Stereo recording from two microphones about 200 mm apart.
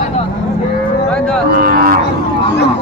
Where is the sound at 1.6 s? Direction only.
45° right (ahead or behind).